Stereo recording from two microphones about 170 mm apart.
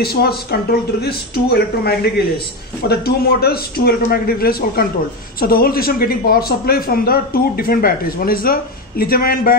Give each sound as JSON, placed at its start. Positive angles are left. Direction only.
{"t": 0.0, "sound": "a man's voice", "side_deg": 65}